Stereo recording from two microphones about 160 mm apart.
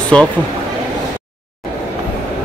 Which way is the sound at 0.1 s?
5° left (ahead or behind).